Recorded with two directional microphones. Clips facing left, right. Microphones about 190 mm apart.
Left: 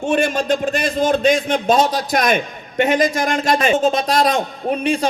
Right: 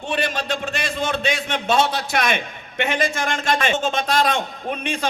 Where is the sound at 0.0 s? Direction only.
45° left (ahead or behind).